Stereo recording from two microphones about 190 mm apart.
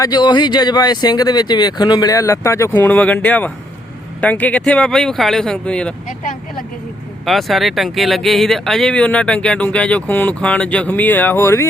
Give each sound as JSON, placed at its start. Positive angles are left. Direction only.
{"t": 0.0, "sound": "speech", "side_deg": 20}
{"t": 7.3, "sound": "speech", "side_deg": 0}